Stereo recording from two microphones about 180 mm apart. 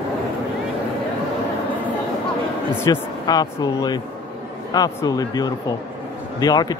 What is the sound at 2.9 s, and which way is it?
Speech, 20° left (ahead or behind).